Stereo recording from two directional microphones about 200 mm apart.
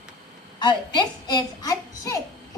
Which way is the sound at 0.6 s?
20° left (ahead or behind).